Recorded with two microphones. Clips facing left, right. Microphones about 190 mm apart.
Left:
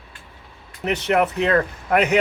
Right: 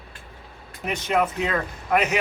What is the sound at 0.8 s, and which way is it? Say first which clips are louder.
A man's voice: left 4 dB; 70° left (ahead or behind).